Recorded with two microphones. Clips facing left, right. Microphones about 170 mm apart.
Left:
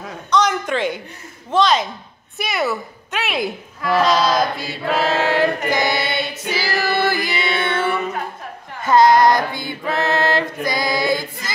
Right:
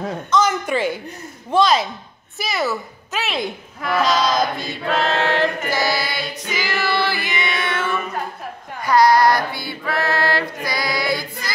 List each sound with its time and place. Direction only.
0.3 s a sound: 5° right (ahead or behind)
1.5 s a woman's voice: 10° right (ahead or behind)
4.0 s choir: centre (ahead or behind); by 6.2 s 25° left (ahead or behind)
6.5 s music: 35° left (ahead or behind)
8.8 s chant: 20° left (ahead or behind)